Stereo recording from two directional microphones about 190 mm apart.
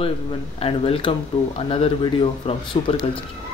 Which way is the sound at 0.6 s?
30° left (ahead or behind).